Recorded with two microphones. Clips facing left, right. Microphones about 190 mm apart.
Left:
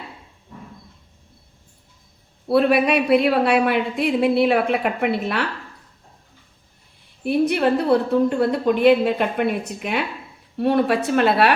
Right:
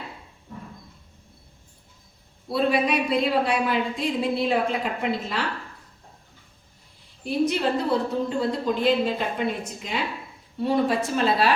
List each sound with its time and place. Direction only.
2.5 s speech: 65° left (ahead or behind)
7.3 s speech: 60° left (ahead or behind)